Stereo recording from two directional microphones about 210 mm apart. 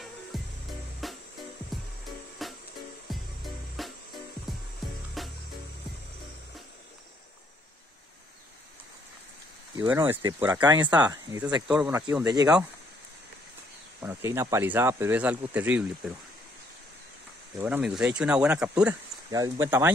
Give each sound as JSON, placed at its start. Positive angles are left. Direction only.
{"t": 0.3, "sound": "music", "side_deg": 0}
{"t": 5.2, "sound": "music", "side_deg": 0}
{"t": 9.8, "sound": "speech", "side_deg": -10}
{"t": 11.6, "sound": "speech", "side_deg": -5}
{"t": 11.9, "sound": "speech", "side_deg": -15}
{"t": 14.0, "sound": "speech", "side_deg": -10}
{"t": 17.6, "sound": "speech", "side_deg": -5}